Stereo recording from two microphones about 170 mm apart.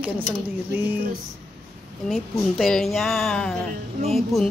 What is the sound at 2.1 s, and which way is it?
A woman's voice, centre (ahead or behind).